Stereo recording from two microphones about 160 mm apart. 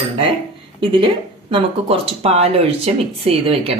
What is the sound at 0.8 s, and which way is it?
Speech, 35° right (ahead or behind).